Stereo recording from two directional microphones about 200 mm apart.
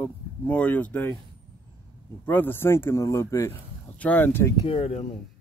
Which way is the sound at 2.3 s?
10° left (ahead or behind).